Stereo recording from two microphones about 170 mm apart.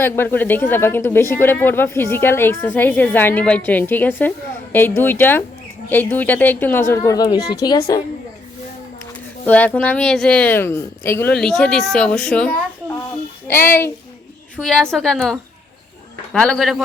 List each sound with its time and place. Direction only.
0.0 s a woman's voice: 10° left (ahead or behind)
9.5 s speech: 10° left (ahead or behind)
13.5 s speech: 15° left (ahead or behind)
14.5 s a man's voice: 5° left (ahead or behind)